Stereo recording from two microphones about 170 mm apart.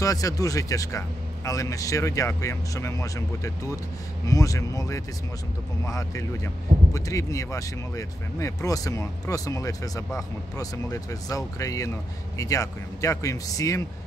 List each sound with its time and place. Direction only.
0.0 s a man's voice: 20° left (ahead or behind)